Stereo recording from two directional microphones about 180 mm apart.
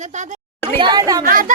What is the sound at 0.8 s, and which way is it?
Speech, 25° right (ahead or behind).